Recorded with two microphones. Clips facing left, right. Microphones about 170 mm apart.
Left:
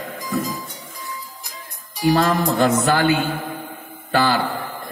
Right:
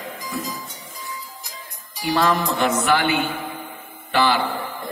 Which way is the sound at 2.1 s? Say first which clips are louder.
Left 2 dB; 45° left (ahead or behind).